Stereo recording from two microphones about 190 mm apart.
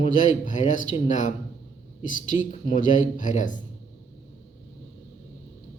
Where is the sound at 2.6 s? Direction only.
40° left (ahead or behind).